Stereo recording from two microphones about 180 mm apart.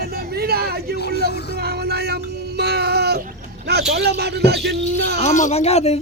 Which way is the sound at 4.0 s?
65° right (ahead or behind).